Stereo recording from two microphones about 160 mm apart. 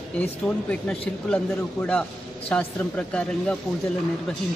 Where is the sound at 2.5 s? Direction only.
5° left (ahead or behind).